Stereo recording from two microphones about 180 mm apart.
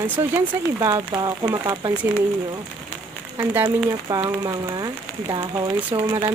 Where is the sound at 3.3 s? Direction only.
10° right (ahead or behind); by 6.3 s 30° right (ahead or behind).